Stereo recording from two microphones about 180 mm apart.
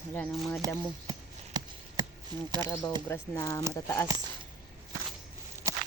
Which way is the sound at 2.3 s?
25° right (ahead or behind).